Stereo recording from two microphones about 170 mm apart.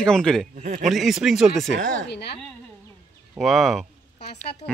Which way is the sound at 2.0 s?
75° left (ahead or behind).